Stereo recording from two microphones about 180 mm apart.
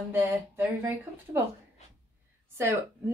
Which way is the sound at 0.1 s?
10° right (ahead or behind).